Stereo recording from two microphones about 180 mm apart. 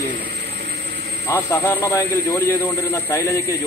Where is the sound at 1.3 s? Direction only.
15° left (ahead or behind).